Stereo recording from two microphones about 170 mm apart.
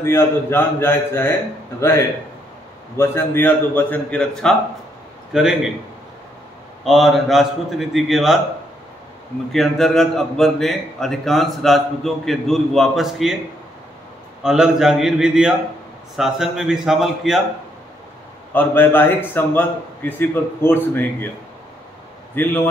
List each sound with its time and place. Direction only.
0.0 s a man's voice: 15° left (ahead or behind); by 5.7 s 5° right (ahead or behind)
6.8 s a man's voice: centre (ahead or behind)
9.5 s a man's voice: centre (ahead or behind)
14.4 s a man's voice: 5° right (ahead or behind)
18.5 s a man's voice: 10° left (ahead or behind)
22.3 s a man's voice: 10° left (ahead or behind)